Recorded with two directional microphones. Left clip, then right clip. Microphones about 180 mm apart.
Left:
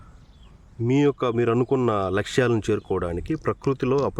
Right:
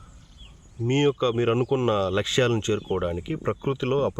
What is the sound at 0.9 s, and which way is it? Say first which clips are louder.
Speech: left 1 dB; 25° left (ahead or behind).